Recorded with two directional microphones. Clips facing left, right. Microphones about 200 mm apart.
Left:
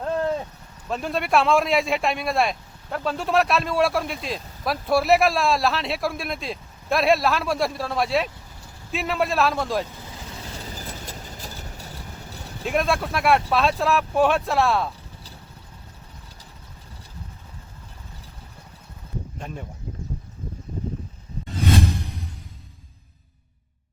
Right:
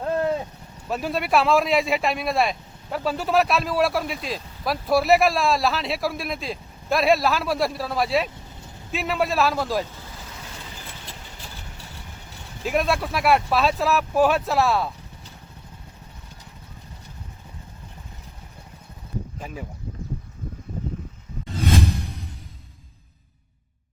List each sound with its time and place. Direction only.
0.0 s a sound: 5° right (ahead or behind)
0.9 s speech: 5° right (ahead or behind)
10.6 s vehicle: 40° left (ahead or behind)
12.6 s speech: centre (ahead or behind)
19.4 s speech: 5° right (ahead or behind)